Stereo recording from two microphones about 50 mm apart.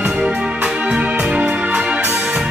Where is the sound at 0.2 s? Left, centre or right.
Centre.